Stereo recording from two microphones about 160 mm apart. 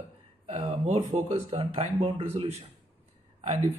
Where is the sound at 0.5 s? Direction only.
40° right (ahead or behind).